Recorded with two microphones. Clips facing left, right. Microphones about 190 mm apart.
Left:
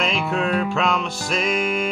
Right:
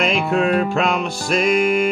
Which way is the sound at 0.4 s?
50° right (ahead or behind).